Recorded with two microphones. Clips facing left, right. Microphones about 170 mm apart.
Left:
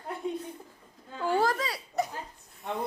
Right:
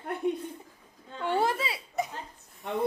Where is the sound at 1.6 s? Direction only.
5° right (ahead or behind).